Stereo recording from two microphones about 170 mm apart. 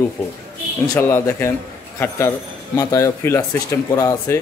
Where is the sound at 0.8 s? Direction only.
20° left (ahead or behind).